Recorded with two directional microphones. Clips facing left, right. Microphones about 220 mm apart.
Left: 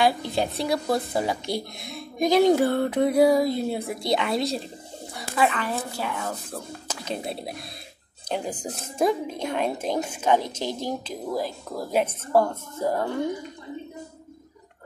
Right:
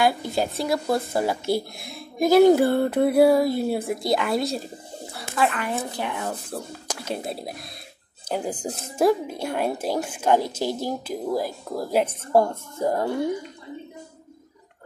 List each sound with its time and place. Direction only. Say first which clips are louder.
0.0 s speech: right 1 dB; centre (ahead or behind)
5.6 s a woman's voice: right 1 dB; 20° right (ahead or behind)